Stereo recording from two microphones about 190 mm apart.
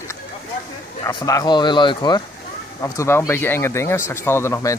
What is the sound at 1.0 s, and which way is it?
Speech, 20° left (ahead or behind).